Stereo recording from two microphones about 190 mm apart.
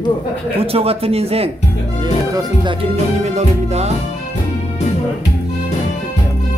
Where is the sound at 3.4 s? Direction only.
35° right (ahead or behind).